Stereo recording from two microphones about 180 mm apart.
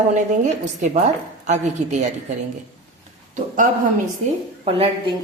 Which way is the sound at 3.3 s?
45° right (ahead or behind).